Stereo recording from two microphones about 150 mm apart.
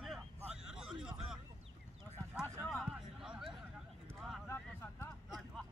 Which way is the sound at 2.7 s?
5° right (ahead or behind).